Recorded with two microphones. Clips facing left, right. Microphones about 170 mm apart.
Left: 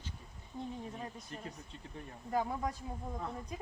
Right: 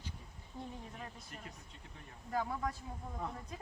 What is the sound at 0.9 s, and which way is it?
Speech, 25° left (ahead or behind).